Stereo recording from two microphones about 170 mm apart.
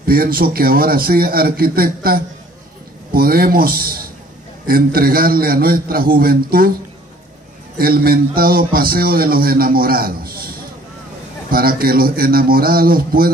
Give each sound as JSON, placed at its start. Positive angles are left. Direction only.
{"t": 0.0, "sound": "a man's voice", "side_deg": -60}
{"t": 7.7, "sound": "a man's voice", "side_deg": -60}
{"t": 11.5, "sound": "a man's voice", "side_deg": -60}